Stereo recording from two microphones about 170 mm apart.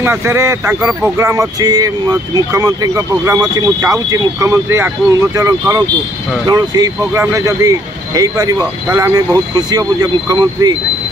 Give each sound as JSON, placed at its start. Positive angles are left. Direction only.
{"t": 0.0, "sound": "speech", "side_deg": -15}